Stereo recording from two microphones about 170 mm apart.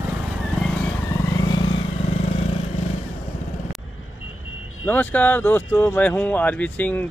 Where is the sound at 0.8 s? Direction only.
20° left (ahead or behind); by 2.6 s 35° left (ahead or behind).